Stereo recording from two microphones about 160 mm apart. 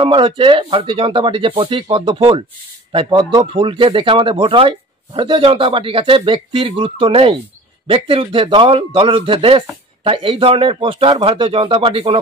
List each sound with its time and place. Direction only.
0.0 s a man's voice: 30° right (ahead or behind)